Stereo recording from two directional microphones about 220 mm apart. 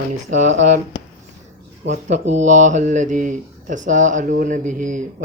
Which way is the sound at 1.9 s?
30° right (ahead or behind).